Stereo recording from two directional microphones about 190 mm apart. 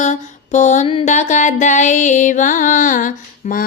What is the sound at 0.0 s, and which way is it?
Mantra, 40° left (ahead or behind).